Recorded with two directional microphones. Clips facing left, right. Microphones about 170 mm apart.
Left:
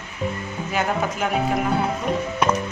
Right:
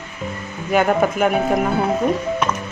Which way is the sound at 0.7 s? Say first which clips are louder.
Right 8 dB; 55° right (ahead or behind).